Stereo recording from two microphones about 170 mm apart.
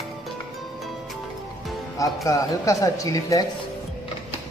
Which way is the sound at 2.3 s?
20° left (ahead or behind).